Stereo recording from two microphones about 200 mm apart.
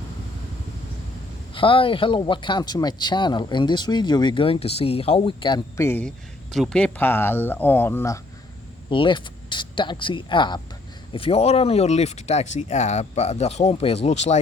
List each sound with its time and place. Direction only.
1.5 s speech: 25° left (ahead or behind)
8.9 s speech: 25° left (ahead or behind)